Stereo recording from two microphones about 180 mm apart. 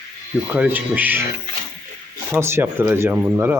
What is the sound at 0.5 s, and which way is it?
Speech, 10° right (ahead or behind).